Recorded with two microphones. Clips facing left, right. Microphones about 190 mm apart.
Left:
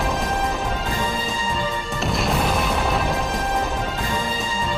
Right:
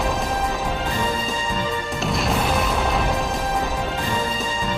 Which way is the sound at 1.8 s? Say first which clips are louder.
Even; centre (ahead or behind).